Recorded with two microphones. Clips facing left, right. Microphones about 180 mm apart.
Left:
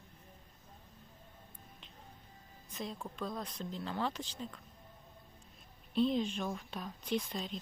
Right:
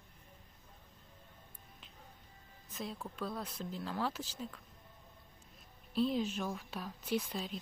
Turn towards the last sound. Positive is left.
turn(degrees=-5)  # may be behind; listen again after turning